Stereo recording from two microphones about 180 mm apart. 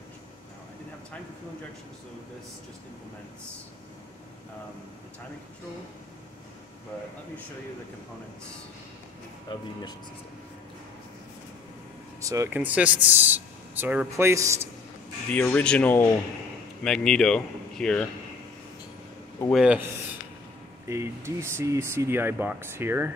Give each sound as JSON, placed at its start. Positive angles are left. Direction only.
{"t": 9.5, "sound": "speech", "side_deg": 25}
{"t": 12.2, "sound": "speech", "side_deg": -15}
{"t": 15.3, "sound": "speech", "side_deg": 5}
{"t": 19.5, "sound": "speech", "side_deg": -5}
{"t": 20.9, "sound": "speech", "side_deg": -15}